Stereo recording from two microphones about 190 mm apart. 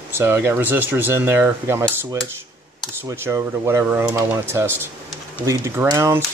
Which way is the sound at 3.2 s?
15° right (ahead or behind).